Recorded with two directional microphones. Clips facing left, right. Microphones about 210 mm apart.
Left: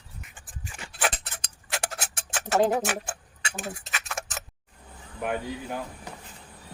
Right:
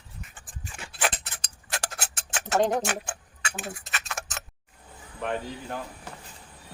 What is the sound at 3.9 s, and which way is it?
Tick-tock, 5° left (ahead or behind).